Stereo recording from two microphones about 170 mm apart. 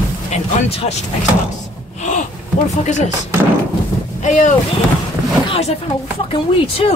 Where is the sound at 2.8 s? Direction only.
45° left (ahead or behind).